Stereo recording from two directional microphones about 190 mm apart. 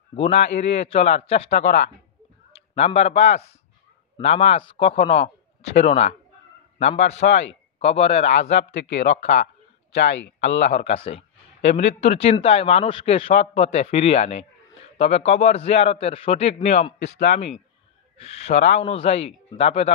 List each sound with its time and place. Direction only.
0.1 s a man's voice: 35° left (ahead or behind)
8.5 s speech: 65° left (ahead or behind)
9.0 s speech: 35° left (ahead or behind)
9.9 s speech: 70° left (ahead or behind)
10.7 s speech: 35° left (ahead or behind)